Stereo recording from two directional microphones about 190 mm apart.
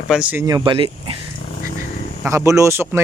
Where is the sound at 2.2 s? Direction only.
15° right (ahead or behind).